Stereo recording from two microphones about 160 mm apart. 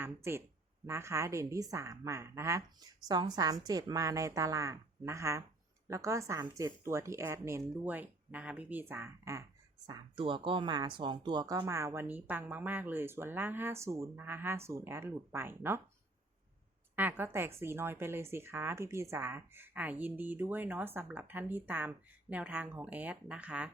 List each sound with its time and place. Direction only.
0.0 s a woman's voice: 15° right (ahead or behind)
9.8 s a woman's voice: 30° right (ahead or behind)
16.9 s speech: 10° right (ahead or behind)